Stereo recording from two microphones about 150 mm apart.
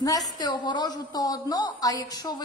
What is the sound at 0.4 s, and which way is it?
A woman's voice, 30° left (ahead or behind).